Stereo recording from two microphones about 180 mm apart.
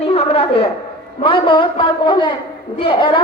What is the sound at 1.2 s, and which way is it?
A man's voice, 25° left (ahead or behind).